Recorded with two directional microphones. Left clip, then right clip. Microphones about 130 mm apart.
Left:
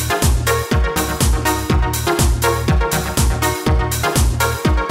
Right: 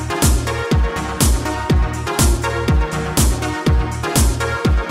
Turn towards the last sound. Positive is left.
turn(degrees=0)  # may be behind; listen again after turning